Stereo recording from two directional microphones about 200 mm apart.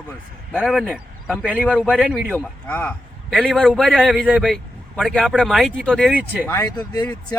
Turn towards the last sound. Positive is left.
turn(degrees=15)  # may be behind; listen again after turning